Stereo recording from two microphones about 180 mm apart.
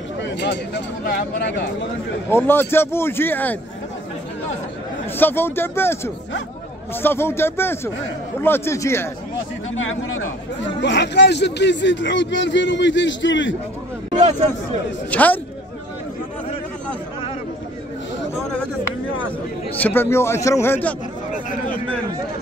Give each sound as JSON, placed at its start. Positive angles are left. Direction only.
{"t": 0.2, "sound": "speech", "side_deg": 80}
{"t": 2.2, "sound": "a man's voice", "side_deg": 10}
{"t": 5.1, "sound": "a man's voice", "side_deg": 10}
{"t": 9.8, "sound": "speech", "side_deg": 90}
{"t": 10.8, "sound": "speech", "side_deg": 75}
{"t": 15.0, "sound": "a man's voice", "side_deg": 10}
{"t": 19.8, "sound": "a man's voice", "side_deg": 10}
{"t": 21.5, "sound": "a sound", "side_deg": 50}